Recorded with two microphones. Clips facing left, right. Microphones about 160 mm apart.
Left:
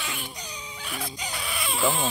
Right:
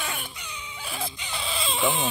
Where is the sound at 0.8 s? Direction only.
30° right (ahead or behind).